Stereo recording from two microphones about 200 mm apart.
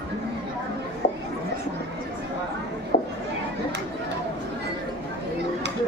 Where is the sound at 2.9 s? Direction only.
40° left (ahead or behind).